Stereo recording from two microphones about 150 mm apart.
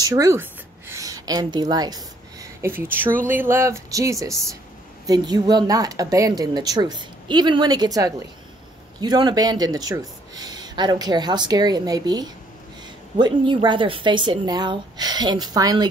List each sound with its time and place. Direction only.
0.0 s a woman's voice: 25° right (ahead or behind)